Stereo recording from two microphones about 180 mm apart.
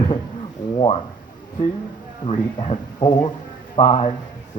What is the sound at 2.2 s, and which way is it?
Speech, 30° left (ahead or behind).